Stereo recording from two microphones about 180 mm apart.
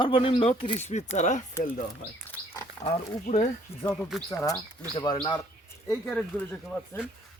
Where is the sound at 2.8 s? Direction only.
40° left (ahead or behind).